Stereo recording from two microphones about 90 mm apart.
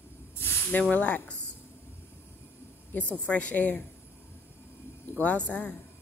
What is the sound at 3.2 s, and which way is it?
Speech, 15° left (ahead or behind).